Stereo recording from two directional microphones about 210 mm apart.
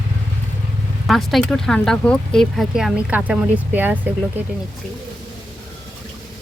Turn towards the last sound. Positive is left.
turn(degrees=-10)  # may be behind; listen again after turning